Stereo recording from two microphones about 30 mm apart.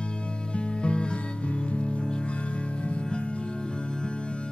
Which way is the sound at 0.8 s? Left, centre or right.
Left.